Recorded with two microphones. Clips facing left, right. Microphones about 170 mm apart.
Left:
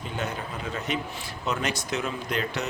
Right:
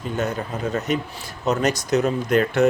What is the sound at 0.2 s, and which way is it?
Speech, 40° right (ahead or behind).